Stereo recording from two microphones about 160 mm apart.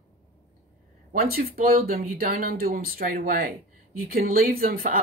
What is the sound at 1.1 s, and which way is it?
Speech, 65° right (ahead or behind).